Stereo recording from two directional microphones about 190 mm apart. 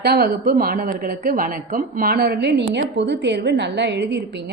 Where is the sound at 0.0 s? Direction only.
55° right (ahead or behind).